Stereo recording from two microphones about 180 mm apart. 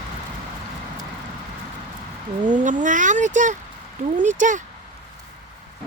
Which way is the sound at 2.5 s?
45° right (ahead or behind).